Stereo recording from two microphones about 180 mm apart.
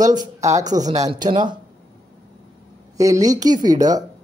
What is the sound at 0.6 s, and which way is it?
Speech, 40° right (ahead or behind).